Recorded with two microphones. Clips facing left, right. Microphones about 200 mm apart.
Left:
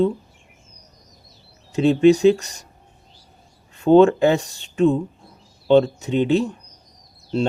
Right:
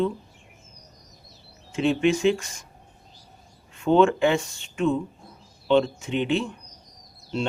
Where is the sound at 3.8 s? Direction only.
35° left (ahead or behind).